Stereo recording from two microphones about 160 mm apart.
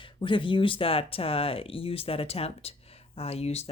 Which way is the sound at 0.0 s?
30° left (ahead or behind).